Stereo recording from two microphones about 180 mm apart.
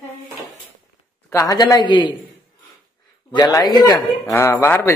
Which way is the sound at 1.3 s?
20° left (ahead or behind).